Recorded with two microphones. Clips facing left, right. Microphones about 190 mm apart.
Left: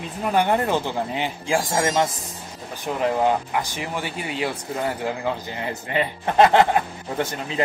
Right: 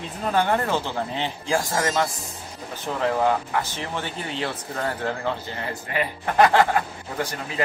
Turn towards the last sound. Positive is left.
turn(degrees=20)  # may be behind; listen again after turning